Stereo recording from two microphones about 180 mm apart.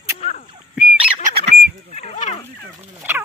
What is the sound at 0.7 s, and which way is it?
Fowl, 5° right (ahead or behind).